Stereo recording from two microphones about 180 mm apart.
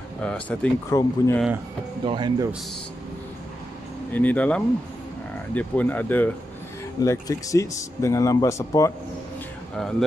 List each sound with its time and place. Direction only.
0.2 s speech: 5° left (ahead or behind)
0.8 s speech: 15° left (ahead or behind)
2.0 s speech: 25° right (ahead or behind)
4.1 s speech: 10° left (ahead or behind)
9.8 s speech: centre (ahead or behind)